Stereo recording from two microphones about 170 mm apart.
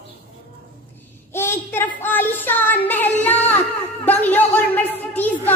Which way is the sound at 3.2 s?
10° left (ahead or behind).